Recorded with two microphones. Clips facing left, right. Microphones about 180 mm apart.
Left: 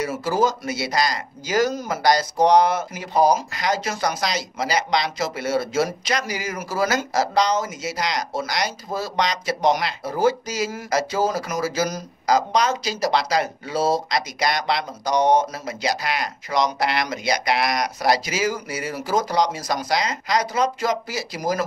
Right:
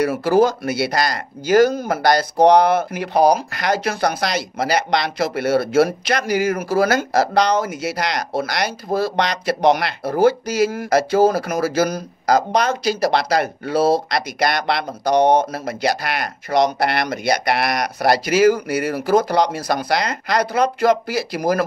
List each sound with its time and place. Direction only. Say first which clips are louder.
0.0 s speech: right 6 dB; 60° right (ahead or behind)